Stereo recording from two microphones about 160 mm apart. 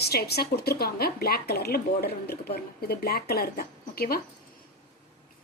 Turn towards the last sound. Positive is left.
turn(degrees=70)  # may be behind; listen again after turning